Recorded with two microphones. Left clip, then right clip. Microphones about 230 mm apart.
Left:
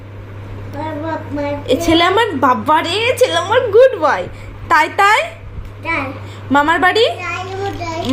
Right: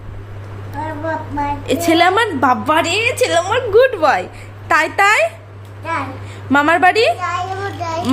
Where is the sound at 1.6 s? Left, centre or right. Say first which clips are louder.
Even; centre.